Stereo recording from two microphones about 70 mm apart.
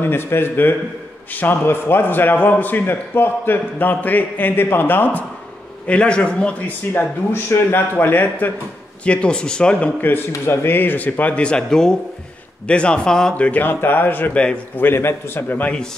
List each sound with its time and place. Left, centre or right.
0.0 s a man's voice: left
5.9 s speech: centre
6.9 s a man's voice: left
10.3 s a man's voice: left; by 13.5 s centre
13.5 s a man's voice: left